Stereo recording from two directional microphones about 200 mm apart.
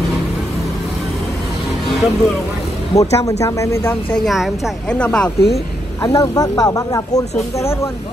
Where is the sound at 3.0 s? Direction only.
15° left (ahead or behind).